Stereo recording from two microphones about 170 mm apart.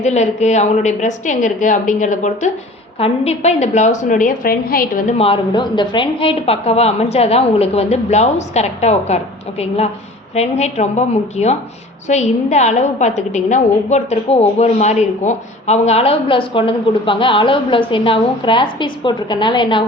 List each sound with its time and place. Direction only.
0.0 s a woman's voice: 40° left (ahead or behind); by 5.0 s 55° left (ahead or behind)
5.1 s a woman's voice: 35° left (ahead or behind)